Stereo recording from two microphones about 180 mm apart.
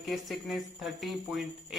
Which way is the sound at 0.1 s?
Centre (ahead or behind).